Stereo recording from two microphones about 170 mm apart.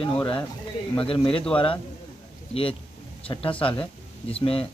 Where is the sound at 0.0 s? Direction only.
30° left (ahead or behind).